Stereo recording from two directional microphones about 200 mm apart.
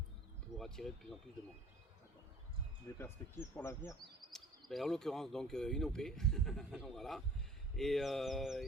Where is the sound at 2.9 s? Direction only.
10° left (ahead or behind).